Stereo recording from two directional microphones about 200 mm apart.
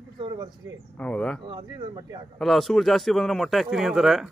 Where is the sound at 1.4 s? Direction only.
20° right (ahead or behind).